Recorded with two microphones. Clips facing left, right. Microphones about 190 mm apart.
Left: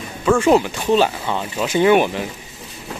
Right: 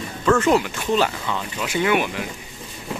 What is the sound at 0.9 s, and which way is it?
Speech, 20° left (ahead or behind).